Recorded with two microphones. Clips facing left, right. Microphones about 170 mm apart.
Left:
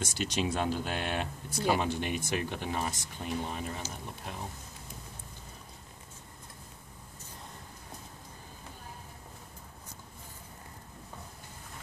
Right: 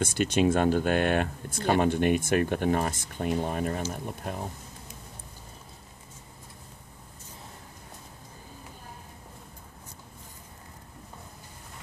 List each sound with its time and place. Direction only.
0.0 s speech: 55° right (ahead or behind)